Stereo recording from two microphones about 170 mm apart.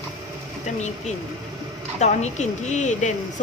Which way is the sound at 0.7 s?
40° left (ahead or behind).